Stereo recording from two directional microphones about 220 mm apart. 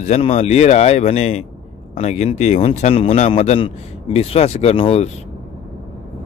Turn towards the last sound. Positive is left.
turn(degrees=25)  # may be behind; listen again after turning